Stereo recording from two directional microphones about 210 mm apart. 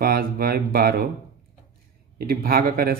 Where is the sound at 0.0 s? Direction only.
45° right (ahead or behind).